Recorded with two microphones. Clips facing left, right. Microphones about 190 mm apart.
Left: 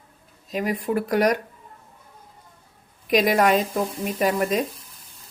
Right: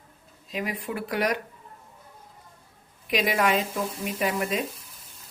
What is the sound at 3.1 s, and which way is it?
Speech, 45° left (ahead or behind).